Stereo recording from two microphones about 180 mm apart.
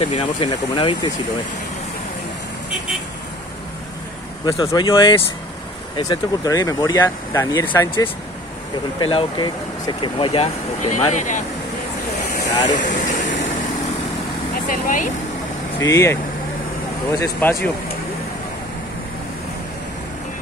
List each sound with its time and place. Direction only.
0.2 s speech: 25° left (ahead or behind)
4.5 s speech: 20° left (ahead or behind)
9.0 s speech: 25° left (ahead or behind); by 11.4 s 45° left (ahead or behind)
12.5 s speech: 45° left (ahead or behind)
14.7 s speech: 45° left (ahead or behind)
15.8 s speech: 15° left (ahead or behind)